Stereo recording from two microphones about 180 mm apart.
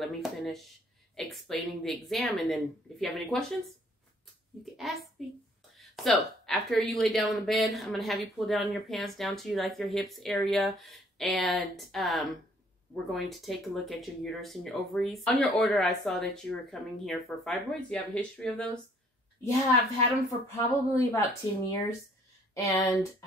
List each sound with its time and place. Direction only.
0.0 s speech: centre (ahead or behind)
5.2 s speech: centre (ahead or behind)
20.4 s speech: 15° left (ahead or behind)